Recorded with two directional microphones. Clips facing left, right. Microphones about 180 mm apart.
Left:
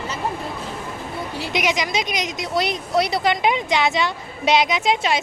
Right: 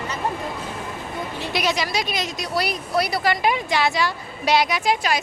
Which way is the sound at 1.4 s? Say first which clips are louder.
Left 1 dB; 15° left (ahead or behind).